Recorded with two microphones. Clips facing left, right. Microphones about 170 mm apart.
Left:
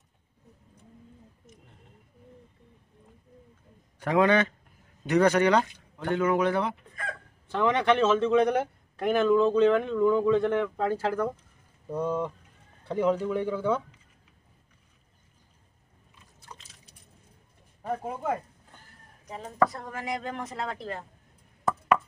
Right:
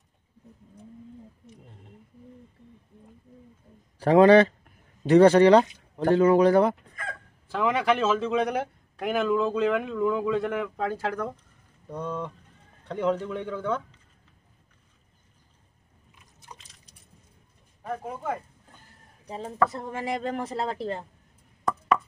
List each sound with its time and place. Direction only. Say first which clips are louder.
4.0 s speech: right 7 dB; 35° right (ahead or behind)
7.4 s a man's voice: left 1 dB; 5° right (ahead or behind)
19.2 s speech: even; 25° right (ahead or behind)